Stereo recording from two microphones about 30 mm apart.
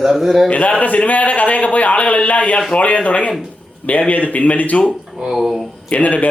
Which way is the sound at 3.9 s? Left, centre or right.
Left.